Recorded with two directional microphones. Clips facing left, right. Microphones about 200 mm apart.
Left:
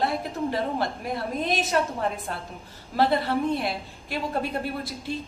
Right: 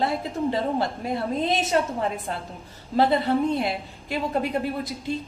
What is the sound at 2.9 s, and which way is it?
A woman's voice, 20° right (ahead or behind).